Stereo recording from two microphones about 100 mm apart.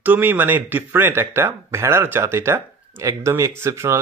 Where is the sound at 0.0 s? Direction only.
20° right (ahead or behind).